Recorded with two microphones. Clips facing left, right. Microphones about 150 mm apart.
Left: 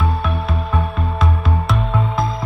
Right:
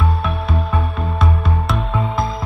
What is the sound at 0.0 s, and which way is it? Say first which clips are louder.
Music: even; centre (ahead or behind).